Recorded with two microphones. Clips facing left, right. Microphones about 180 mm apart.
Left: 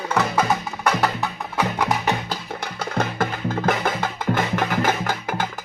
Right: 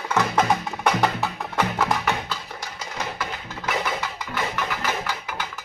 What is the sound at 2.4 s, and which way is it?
Music, 60° left (ahead or behind).